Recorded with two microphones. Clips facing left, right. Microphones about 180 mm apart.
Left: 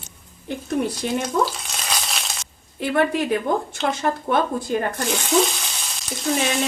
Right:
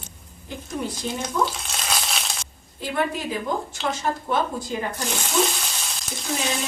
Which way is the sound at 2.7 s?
65° left (ahead or behind).